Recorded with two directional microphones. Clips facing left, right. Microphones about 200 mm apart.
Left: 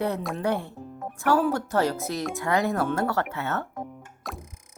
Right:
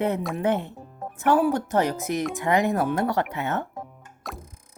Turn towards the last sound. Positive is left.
turn(degrees=0)  # may be behind; listen again after turning